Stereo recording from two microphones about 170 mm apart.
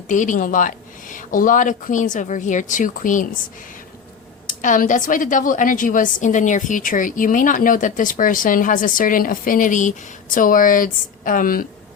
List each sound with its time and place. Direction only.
0.1 s a woman's voice: 50° left (ahead or behind)
4.4 s a woman's voice: 50° left (ahead or behind)